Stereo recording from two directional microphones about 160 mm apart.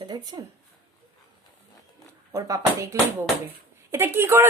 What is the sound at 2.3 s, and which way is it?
Speech, 20° right (ahead or behind).